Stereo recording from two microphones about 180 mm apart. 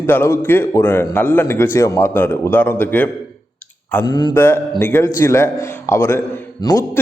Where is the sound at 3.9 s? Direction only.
20° left (ahead or behind).